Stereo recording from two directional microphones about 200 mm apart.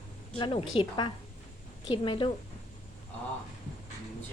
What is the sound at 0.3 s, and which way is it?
A woman's voice, 25° left (ahead or behind).